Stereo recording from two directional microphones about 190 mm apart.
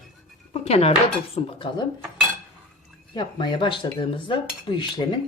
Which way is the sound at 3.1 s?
25° left (ahead or behind).